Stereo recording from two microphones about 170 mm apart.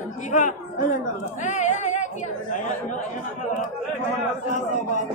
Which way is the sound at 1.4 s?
45° left (ahead or behind).